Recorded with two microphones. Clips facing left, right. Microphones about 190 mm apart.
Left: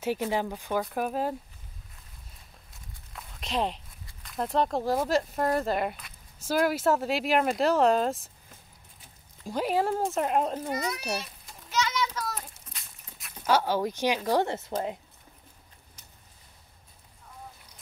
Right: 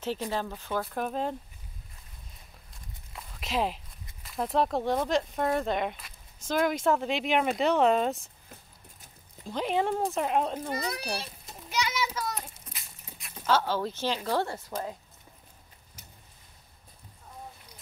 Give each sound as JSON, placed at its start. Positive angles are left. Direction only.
{"t": 0.0, "sound": "a woman's voice", "side_deg": 15}
{"t": 3.1, "sound": "walk", "side_deg": 0}
{"t": 4.2, "sound": "speech", "side_deg": 0}
{"t": 9.5, "sound": "speech", "side_deg": 5}
{"t": 10.7, "sound": "a child's voice", "side_deg": -30}
{"t": 11.7, "sound": "a sound", "side_deg": -10}
{"t": 13.5, "sound": "a woman's voice", "side_deg": 15}